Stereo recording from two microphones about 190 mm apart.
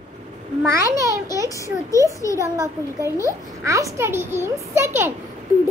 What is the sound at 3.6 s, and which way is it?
A child's voice, 15° right (ahead or behind).